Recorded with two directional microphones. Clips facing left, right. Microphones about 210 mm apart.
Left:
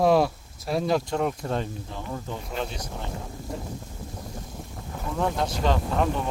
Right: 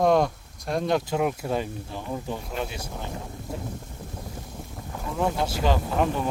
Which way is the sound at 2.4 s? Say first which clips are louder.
Even; 5° right (ahead or behind).